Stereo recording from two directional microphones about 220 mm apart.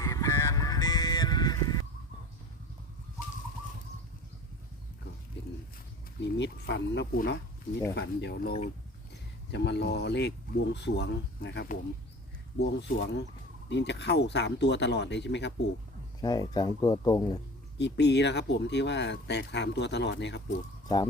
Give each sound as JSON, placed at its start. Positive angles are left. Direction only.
{"t": 0.0, "sound": "honk", "side_deg": 15}
{"t": 6.1, "sound": "speech", "side_deg": 50}
{"t": 16.2, "sound": "speech", "side_deg": 20}
{"t": 17.7, "sound": "speech", "side_deg": 50}
{"t": 20.8, "sound": "speech", "side_deg": 15}